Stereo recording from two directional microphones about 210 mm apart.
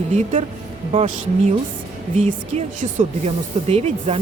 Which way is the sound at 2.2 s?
35° right (ahead or behind).